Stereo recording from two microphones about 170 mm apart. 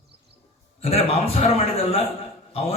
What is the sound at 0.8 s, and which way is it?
A man's voice, 35° left (ahead or behind).